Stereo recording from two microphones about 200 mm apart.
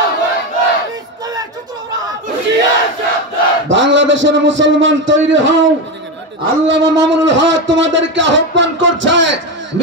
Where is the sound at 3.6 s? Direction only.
70° right (ahead or behind).